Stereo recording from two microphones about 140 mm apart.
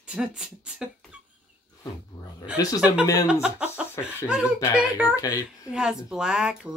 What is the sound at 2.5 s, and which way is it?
Speech, 25° left (ahead or behind).